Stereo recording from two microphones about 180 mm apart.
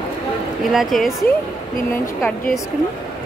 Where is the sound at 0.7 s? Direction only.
Centre (ahead or behind).